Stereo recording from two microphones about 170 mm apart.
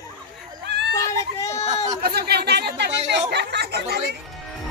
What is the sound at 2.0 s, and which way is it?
Chatter, 65° right (ahead or behind).